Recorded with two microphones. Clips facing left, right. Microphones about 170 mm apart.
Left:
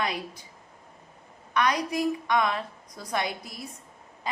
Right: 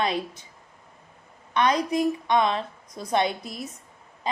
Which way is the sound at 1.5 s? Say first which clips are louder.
Right 3 dB; 25° right (ahead or behind).